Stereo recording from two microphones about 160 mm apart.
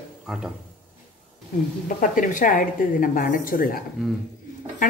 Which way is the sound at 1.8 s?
55° left (ahead or behind).